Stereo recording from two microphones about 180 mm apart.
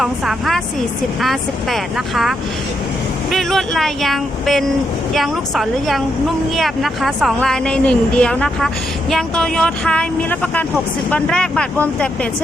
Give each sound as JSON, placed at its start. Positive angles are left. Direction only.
{"t": 0.0, "sound": "speech", "side_deg": 0}
{"t": 3.3, "sound": "speech", "side_deg": 0}